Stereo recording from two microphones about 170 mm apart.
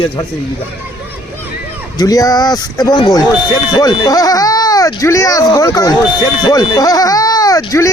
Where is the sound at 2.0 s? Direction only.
20° left (ahead or behind).